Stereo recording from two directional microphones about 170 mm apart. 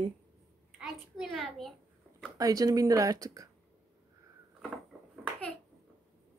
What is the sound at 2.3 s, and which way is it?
Speech, 20° right (ahead or behind).